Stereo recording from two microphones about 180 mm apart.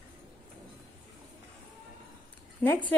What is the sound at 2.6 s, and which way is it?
Speech, 10° left (ahead or behind).